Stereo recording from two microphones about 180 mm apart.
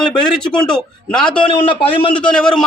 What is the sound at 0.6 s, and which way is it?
Speech, 5° left (ahead or behind).